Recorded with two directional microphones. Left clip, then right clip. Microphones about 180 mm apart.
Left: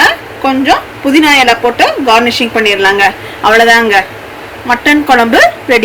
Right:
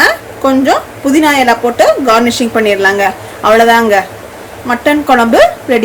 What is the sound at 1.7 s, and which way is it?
A woman's voice, 30° right (ahead or behind).